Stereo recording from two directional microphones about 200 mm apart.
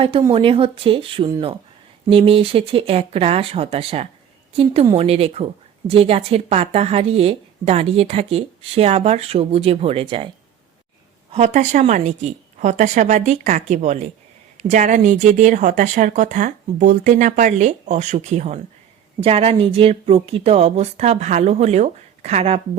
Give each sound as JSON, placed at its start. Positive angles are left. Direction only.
{"t": 0.0, "sound": "a woman's voice", "side_deg": -25}
{"t": 11.3, "sound": "a woman's voice", "side_deg": -35}